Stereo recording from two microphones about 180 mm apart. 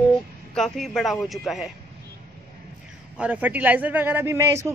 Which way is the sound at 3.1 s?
10° right (ahead or behind).